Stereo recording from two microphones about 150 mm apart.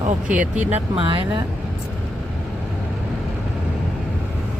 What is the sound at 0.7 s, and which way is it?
Speech, 35° right (ahead or behind).